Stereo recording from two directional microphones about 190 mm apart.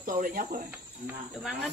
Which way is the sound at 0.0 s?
45° right (ahead or behind).